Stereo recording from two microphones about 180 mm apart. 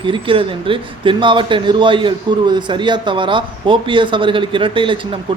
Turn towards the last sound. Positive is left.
turn(degrees=-30)  # may be behind; listen again after turning